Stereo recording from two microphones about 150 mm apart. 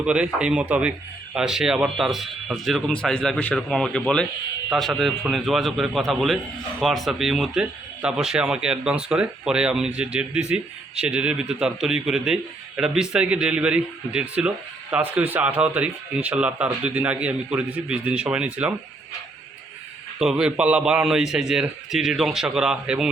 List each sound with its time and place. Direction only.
0.0 s a man's voice: 5° right (ahead or behind)
20.1 s a man's voice: 5° right (ahead or behind)